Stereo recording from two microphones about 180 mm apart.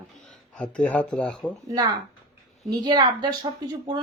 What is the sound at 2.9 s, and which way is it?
A woman's voice, 25° right (ahead or behind).